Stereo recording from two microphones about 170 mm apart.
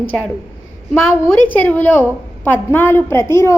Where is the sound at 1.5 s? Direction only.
10° left (ahead or behind).